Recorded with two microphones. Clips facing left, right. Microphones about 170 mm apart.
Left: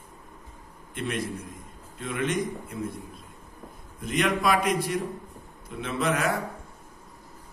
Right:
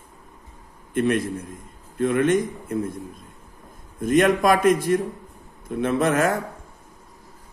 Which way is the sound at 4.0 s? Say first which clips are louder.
Right 8 dB; 45° right (ahead or behind).